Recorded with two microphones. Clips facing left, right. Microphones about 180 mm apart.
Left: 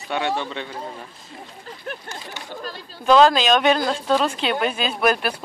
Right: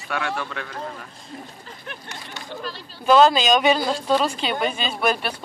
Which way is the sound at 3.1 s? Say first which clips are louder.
Left 1 dB; centre (ahead or behind).